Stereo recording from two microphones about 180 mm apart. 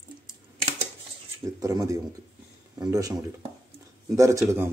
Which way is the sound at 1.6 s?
20° right (ahead or behind).